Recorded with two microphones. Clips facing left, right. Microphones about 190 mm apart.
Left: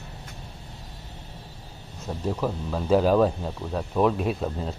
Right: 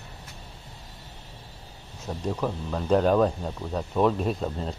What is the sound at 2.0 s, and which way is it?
Speech, 5° left (ahead or behind).